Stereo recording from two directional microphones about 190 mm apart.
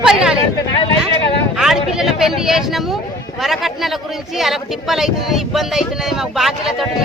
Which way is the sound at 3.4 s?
Centre (ahead or behind).